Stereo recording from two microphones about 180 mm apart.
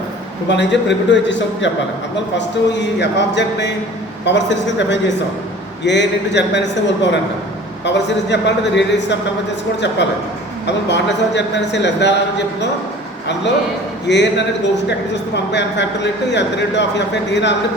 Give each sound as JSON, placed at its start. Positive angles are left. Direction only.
{"t": 0.4, "sound": "a man's voice", "side_deg": 80}
{"t": 10.8, "sound": "a woman's voice", "side_deg": 75}
{"t": 14.1, "sound": "a woman's voice", "side_deg": 75}